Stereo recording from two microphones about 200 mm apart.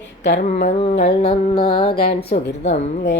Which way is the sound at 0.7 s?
30° left (ahead or behind).